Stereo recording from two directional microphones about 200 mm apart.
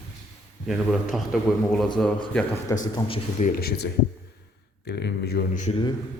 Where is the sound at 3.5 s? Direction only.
50° left (ahead or behind).